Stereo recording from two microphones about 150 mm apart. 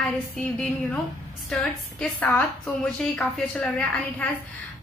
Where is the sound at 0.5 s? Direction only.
5° left (ahead or behind).